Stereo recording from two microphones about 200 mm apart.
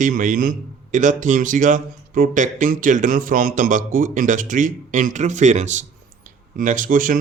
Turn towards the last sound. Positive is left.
turn(degrees=-40)  # may be behind; listen again after turning